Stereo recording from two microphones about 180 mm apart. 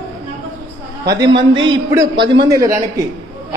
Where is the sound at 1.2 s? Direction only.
25° right (ahead or behind).